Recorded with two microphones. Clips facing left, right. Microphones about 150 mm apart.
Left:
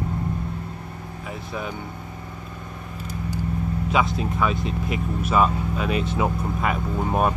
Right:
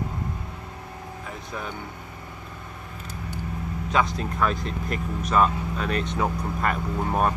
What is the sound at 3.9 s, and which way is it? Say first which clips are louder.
Speech: left 1 dB; 5° left (ahead or behind).